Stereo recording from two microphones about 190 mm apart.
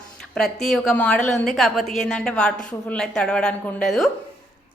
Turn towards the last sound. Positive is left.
turn(degrees=0)  # may be behind; listen again after turning